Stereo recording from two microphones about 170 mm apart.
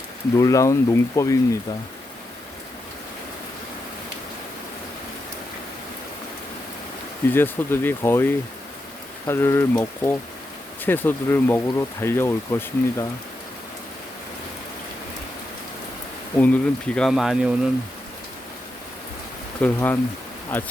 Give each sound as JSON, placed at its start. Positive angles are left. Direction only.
{"t": 0.3, "sound": "speech", "side_deg": 20}
{"t": 7.3, "sound": "speech", "side_deg": 15}
{"t": 16.4, "sound": "speech", "side_deg": 5}
{"t": 19.6, "sound": "speech", "side_deg": 10}